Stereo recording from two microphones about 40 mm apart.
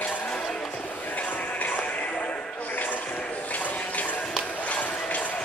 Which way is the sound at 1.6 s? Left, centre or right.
Left.